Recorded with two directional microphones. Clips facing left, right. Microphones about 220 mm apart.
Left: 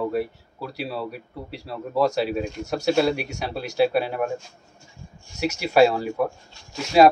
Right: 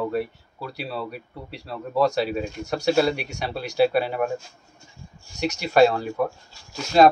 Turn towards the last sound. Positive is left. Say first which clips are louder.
# left 1 dB
turn(degrees=5)  # may be behind; listen again after turning